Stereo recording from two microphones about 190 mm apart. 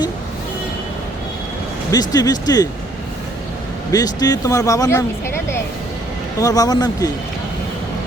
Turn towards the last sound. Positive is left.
turn(degrees=20)  # may be behind; listen again after turning